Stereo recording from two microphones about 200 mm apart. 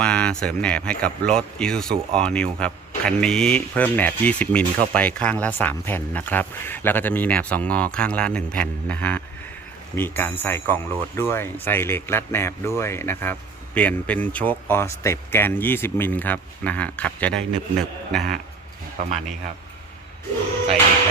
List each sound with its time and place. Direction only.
0.0 s speech: 5° left (ahead or behind)
19.0 s a man's voice: 40° right (ahead or behind)